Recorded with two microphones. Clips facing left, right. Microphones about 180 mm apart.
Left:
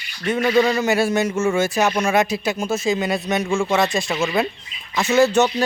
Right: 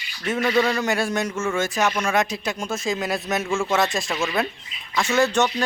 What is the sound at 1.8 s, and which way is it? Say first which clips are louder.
Speech: left 3 dB; 25° left (ahead or behind).